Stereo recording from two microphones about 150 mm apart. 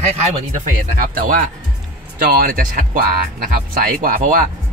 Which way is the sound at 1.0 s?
70° right (ahead or behind).